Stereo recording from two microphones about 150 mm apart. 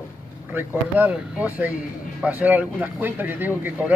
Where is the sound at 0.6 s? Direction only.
15° right (ahead or behind).